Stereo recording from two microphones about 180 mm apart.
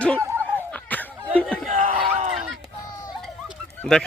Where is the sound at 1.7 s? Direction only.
45° right (ahead or behind).